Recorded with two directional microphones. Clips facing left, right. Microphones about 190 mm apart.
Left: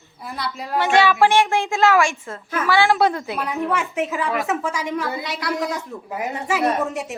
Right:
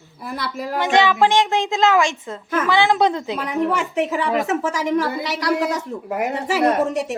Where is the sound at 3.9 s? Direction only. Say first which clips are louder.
Right 3 dB; 40° right (ahead or behind).